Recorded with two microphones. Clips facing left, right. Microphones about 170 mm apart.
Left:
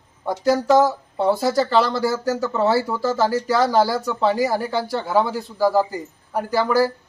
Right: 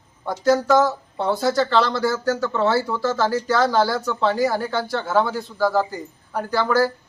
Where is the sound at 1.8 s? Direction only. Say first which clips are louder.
Even; 35° left (ahead or behind).